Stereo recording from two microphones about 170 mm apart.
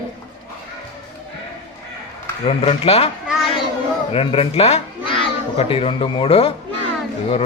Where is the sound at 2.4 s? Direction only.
35° left (ahead or behind).